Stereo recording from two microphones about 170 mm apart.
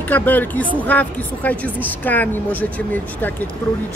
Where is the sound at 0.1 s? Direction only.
10° left (ahead or behind).